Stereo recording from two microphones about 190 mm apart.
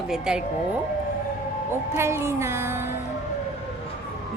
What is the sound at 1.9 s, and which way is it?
Music, 15° right (ahead or behind).